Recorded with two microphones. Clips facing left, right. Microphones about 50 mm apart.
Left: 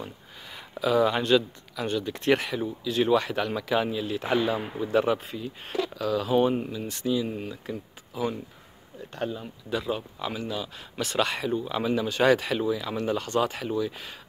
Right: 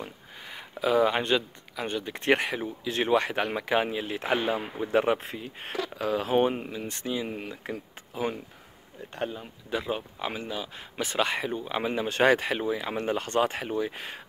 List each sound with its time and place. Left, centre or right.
0.0 s speech: right